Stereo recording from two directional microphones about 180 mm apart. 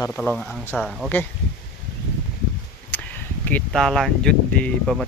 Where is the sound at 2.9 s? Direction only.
10° left (ahead or behind).